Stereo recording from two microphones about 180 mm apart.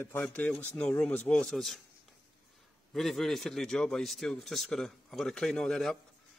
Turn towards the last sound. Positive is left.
turn(degrees=0)  # may be behind; listen again after turning